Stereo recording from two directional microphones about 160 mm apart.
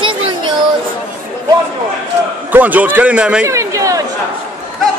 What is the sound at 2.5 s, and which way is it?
A man's voice, 10° right (ahead or behind).